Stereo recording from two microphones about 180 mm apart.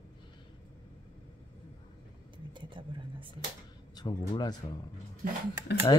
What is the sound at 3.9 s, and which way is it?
Speech, 25° left (ahead or behind).